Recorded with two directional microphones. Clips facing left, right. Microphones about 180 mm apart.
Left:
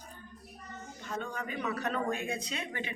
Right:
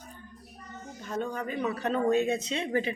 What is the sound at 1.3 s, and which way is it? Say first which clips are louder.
Speech: right 5 dB; 35° right (ahead or behind).